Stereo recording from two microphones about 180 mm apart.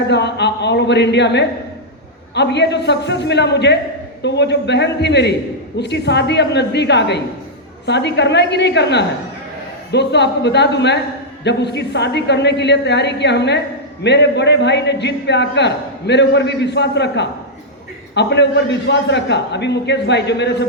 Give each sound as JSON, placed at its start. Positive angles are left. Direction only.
{"t": 0.1, "sound": "a man's voice", "side_deg": 70}